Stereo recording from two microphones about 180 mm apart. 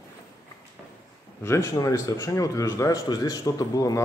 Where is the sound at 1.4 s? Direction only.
15° left (ahead or behind).